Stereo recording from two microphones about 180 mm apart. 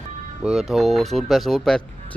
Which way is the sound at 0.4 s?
Centre (ahead or behind).